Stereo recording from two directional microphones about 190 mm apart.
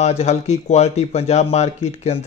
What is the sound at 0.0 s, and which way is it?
Speech, 35° left (ahead or behind).